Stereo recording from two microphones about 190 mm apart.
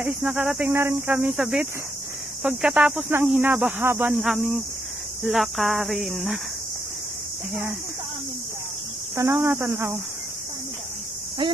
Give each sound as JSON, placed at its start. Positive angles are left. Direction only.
{"t": 0.0, "sound": "speech", "side_deg": -5}
{"t": 9.1, "sound": "speech", "side_deg": -15}
{"t": 11.4, "sound": "speech", "side_deg": -25}